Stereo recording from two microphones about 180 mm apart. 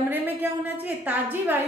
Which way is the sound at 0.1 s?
10° right (ahead or behind).